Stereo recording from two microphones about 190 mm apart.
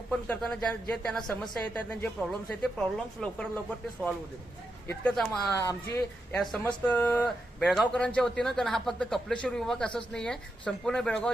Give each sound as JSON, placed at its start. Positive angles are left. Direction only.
{"t": 0.1, "sound": "speech", "side_deg": 5}
{"t": 5.5, "sound": "speech", "side_deg": 20}
{"t": 6.3, "sound": "speech", "side_deg": 5}